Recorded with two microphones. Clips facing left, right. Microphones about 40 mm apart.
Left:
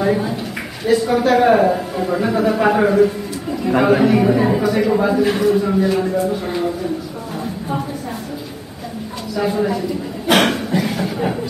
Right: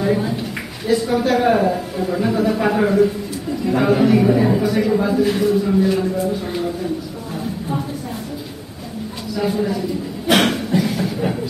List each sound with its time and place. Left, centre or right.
0.1 s a man's voice: centre
9.3 s a man's voice: centre
10.2 s chuckle: centre